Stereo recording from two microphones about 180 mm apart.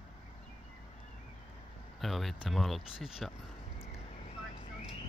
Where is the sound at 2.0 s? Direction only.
Centre (ahead or behind).